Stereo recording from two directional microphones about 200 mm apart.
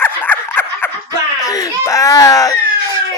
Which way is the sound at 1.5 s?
15° left (ahead or behind).